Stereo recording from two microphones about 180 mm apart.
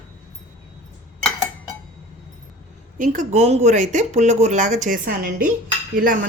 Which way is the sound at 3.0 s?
45° right (ahead or behind).